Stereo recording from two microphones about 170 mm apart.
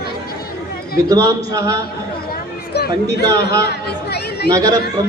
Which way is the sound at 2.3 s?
70° left (ahead or behind).